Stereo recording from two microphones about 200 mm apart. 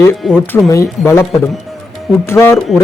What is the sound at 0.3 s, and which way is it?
A man's voice, 10° left (ahead or behind).